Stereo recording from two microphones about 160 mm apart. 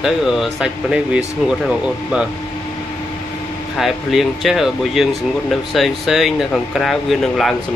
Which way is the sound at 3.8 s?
Centre (ahead or behind).